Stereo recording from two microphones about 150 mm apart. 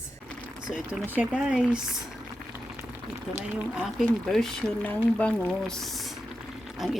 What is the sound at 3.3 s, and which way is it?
Speech, 5° right (ahead or behind).